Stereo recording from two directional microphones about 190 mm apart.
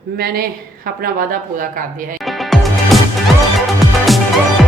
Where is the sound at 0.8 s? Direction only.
50° right (ahead or behind).